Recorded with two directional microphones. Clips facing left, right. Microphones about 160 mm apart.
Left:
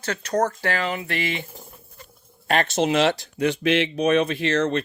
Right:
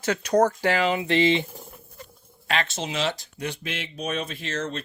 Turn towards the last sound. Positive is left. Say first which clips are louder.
# left 9 dB
turn(degrees=70)  # may be behind; listen again after turning